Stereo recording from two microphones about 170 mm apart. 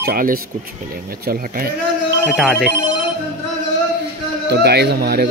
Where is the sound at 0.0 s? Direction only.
60° right (ahead or behind).